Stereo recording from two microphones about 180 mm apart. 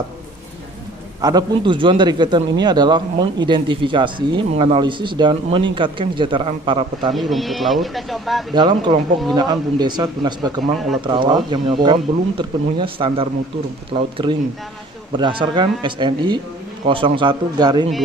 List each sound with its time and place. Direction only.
1.2 s speech: 25° right (ahead or behind)
7.2 s speech: centre (ahead or behind)
8.5 s speech: 25° right (ahead or behind)